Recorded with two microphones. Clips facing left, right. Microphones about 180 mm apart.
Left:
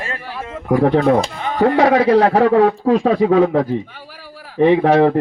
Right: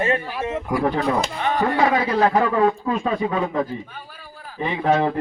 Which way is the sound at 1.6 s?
70° left (ahead or behind).